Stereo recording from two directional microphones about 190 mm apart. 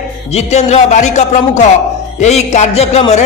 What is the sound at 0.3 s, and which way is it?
A man's voice, 35° left (ahead or behind).